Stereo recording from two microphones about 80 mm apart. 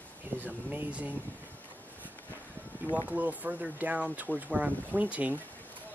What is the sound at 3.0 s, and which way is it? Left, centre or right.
Speech, centre.